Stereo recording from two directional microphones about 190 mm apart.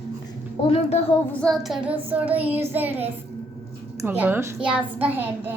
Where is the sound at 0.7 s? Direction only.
35° left (ahead or behind).